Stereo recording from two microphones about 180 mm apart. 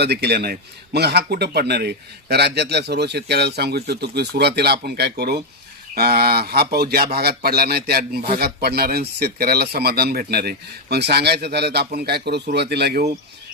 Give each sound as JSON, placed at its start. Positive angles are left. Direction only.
{"t": 0.0, "sound": "speech", "side_deg": -65}